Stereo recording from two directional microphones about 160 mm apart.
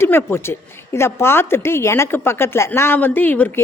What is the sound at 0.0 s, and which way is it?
Speech, 15° left (ahead or behind).